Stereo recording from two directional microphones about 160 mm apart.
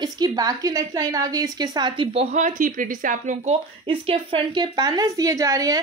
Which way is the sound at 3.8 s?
35° right (ahead or behind).